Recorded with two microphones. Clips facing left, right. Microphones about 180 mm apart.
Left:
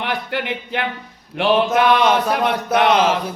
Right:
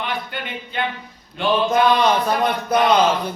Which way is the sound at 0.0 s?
75° left (ahead or behind).